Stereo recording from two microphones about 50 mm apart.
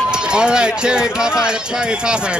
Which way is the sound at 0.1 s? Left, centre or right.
Centre.